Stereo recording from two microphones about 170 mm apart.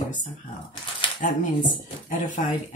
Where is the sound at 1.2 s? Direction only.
50° left (ahead or behind).